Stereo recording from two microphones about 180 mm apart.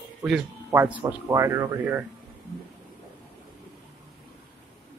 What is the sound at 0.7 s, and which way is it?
Speech, 15° right (ahead or behind).